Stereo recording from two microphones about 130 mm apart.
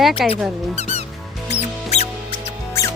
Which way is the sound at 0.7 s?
55° left (ahead or behind).